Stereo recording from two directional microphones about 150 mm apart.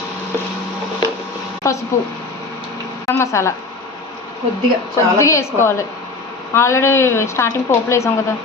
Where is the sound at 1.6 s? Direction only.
20° left (ahead or behind).